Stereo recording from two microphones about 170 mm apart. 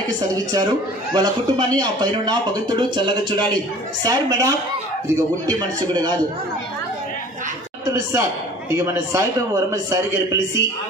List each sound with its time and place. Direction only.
0.3 s speech: 20° right (ahead or behind)
7.8 s a man's voice: 15° right (ahead or behind)